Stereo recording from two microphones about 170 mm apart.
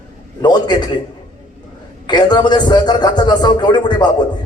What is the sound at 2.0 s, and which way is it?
A man's voice, 25° left (ahead or behind).